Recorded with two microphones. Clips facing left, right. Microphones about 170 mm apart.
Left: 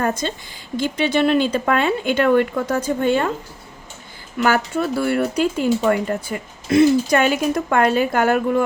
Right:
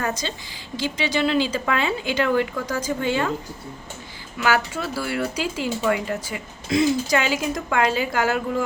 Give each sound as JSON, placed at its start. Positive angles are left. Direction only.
{"t": 0.0, "sound": "a woman's voice", "side_deg": 50}
{"t": 4.4, "sound": "speech", "side_deg": 50}